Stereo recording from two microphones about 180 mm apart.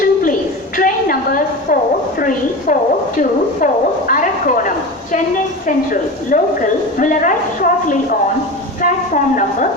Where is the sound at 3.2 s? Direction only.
50° left (ahead or behind).